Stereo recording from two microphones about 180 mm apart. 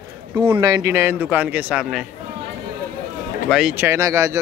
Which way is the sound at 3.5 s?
5° right (ahead or behind).